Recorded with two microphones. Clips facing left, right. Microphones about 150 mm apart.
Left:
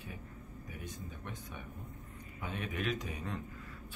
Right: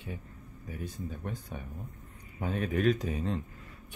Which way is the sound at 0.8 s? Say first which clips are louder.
Right 9 dB; 35° right (ahead or behind).